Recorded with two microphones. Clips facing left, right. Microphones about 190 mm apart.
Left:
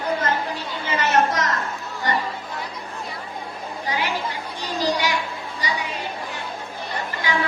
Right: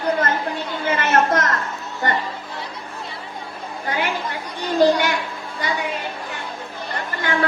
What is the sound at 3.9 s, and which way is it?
Chatter, 55° right (ahead or behind).